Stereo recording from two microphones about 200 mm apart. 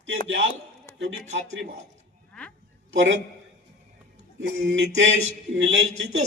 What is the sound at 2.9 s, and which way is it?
Speech, 65° right (ahead or behind).